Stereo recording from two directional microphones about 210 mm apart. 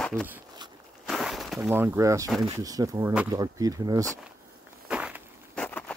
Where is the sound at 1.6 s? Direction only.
10° right (ahead or behind).